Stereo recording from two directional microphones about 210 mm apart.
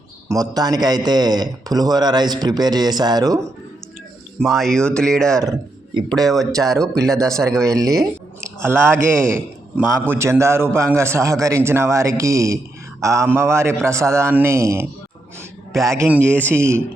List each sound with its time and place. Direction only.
0.3 s a man's voice: 15° right (ahead or behind)
4.4 s speech: centre (ahead or behind)
5.4 s a sound: 15° right (ahead or behind)
6.2 s speech: centre (ahead or behind)
7.4 s a man's voice: 15° right (ahead or behind)
15.7 s a man's voice: centre (ahead or behind)